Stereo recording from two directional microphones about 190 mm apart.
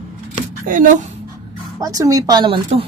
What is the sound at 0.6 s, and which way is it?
Speech, 45° right (ahead or behind).